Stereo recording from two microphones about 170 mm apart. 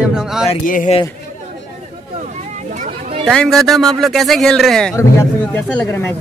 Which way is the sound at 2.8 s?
35° right (ahead or behind).